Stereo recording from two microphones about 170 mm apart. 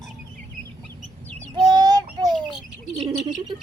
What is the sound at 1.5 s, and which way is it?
Child singing, 25° right (ahead or behind).